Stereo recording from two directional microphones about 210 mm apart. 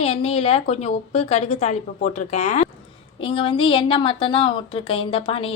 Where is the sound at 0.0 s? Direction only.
30° left (ahead or behind).